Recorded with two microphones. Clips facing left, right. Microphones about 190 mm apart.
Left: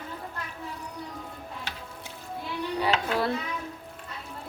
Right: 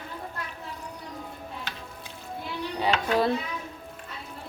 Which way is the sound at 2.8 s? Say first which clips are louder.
Right 3 dB; 20° right (ahead or behind).